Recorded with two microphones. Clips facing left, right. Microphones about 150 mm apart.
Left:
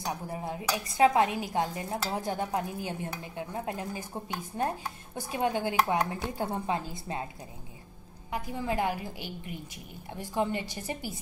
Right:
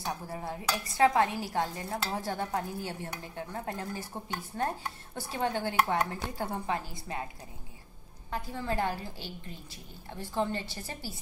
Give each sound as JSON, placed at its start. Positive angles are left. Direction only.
{"t": 0.0, "sound": "dishes", "side_deg": 20}
{"t": 8.3, "sound": "dishes", "side_deg": 15}